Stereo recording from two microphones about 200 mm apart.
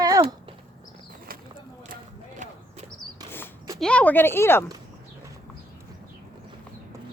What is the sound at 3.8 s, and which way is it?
Speech, 5° left (ahead or behind).